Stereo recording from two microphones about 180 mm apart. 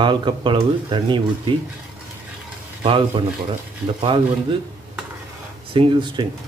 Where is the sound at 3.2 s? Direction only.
30° right (ahead or behind).